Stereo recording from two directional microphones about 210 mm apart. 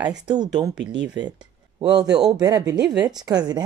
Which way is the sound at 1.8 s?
20° right (ahead or behind).